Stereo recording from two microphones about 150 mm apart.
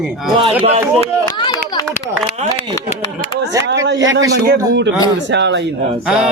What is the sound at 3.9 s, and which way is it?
Speech, 25° right (ahead or behind).